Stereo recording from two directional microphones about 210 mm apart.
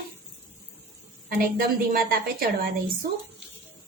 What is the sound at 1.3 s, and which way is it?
A woman's voice, 45° right (ahead or behind).